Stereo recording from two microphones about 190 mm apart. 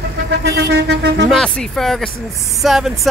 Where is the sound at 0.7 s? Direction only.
60° right (ahead or behind).